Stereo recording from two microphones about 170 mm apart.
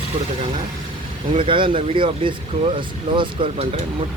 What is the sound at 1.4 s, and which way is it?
Speech, 30° right (ahead or behind).